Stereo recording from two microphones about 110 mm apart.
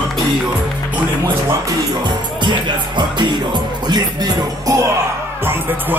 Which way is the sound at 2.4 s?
45° right (ahead or behind).